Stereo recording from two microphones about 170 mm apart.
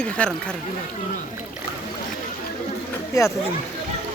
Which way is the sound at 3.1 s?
15° left (ahead or behind).